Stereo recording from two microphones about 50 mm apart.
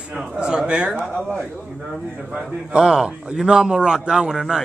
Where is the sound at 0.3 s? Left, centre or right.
Centre.